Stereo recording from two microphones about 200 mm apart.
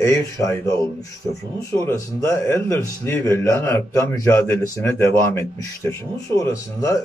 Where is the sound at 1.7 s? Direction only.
15° left (ahead or behind).